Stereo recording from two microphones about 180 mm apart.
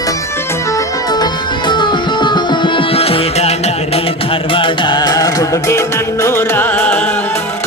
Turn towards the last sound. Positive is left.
turn(degrees=10)  # may be behind; listen again after turning